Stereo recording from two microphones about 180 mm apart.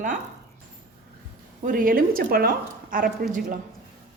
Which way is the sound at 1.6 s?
50° right (ahead or behind).